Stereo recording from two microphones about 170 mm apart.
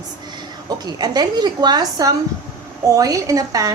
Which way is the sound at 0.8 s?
25° right (ahead or behind).